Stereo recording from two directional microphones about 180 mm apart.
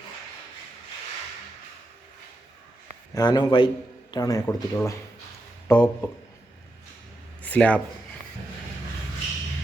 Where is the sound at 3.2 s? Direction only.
25° left (ahead or behind).